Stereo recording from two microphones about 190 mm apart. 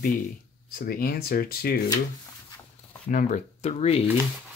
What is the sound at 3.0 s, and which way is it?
Speech, 45° left (ahead or behind).